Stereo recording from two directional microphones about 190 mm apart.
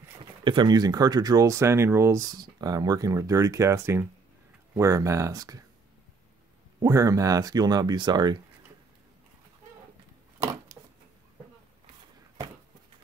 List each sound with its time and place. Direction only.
0.2 s speech: 25° right (ahead or behind)
6.8 s speech: 15° right (ahead or behind)
10.4 s a sound: 15° right (ahead or behind)